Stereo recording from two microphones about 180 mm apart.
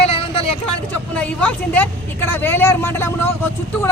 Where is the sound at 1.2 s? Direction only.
5° left (ahead or behind).